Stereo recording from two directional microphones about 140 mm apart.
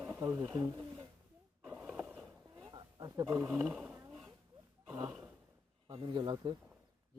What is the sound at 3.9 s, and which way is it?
Roaring cats, 15° right (ahead or behind).